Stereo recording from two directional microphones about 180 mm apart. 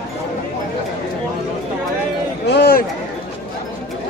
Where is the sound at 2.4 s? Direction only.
60° left (ahead or behind).